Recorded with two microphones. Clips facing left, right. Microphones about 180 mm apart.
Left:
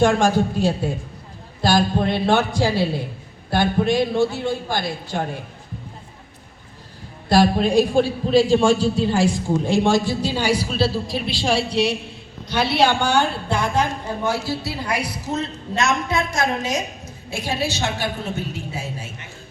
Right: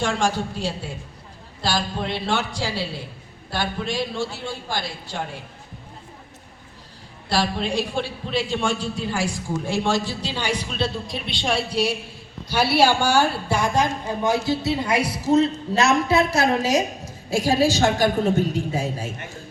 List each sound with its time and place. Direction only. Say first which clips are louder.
0.0 s a man's voice: left 7 dB; 50° left (ahead or behind)
7.3 s a man's voice: left 7 dB; 45° left (ahead or behind); by 11.4 s centre (ahead or behind)
12.8 s a woman's voice: left 1 dB; 5° right (ahead or behind); by 19.3 s 40° right (ahead or behind)